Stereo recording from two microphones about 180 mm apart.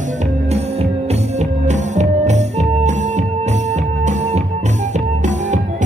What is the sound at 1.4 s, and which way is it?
Music, 40° right (ahead or behind).